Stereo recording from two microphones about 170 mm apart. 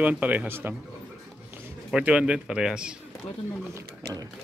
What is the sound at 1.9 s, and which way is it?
Speech, 5° right (ahead or behind).